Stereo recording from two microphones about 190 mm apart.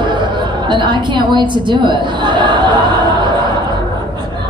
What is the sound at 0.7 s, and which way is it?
A woman's voice, 25° right (ahead or behind).